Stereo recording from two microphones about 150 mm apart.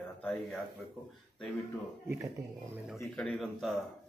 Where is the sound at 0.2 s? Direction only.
10° left (ahead or behind).